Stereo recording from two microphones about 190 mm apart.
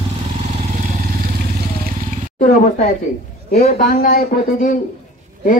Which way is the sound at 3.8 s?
50° left (ahead or behind).